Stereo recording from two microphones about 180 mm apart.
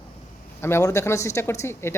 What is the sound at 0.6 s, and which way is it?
Speech, 15° left (ahead or behind).